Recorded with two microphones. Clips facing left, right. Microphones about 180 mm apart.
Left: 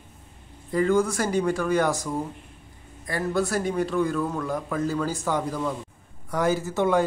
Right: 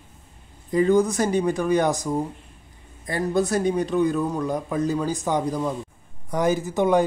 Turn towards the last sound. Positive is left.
turn(degrees=-15)  # may be behind; listen again after turning